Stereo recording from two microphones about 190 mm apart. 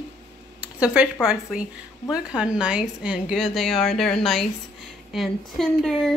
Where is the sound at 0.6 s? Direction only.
5° right (ahead or behind).